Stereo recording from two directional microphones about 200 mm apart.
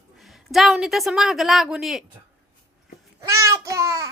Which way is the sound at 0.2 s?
Centre (ahead or behind).